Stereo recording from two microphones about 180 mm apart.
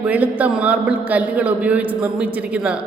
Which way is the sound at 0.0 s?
10° right (ahead or behind).